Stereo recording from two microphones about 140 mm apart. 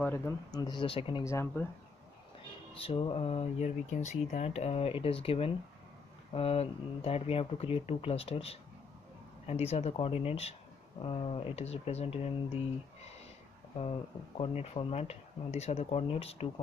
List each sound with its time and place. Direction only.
0.0 s speech: 15° left (ahead or behind)
0.6 s speech: 30° left (ahead or behind)
1.2 s speech: 20° left (ahead or behind)
2.7 s speech: 40° left (ahead or behind)